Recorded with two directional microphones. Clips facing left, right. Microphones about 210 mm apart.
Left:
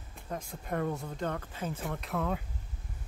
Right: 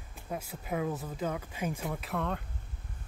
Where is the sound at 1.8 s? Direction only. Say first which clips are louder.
Even; centre (ahead or behind).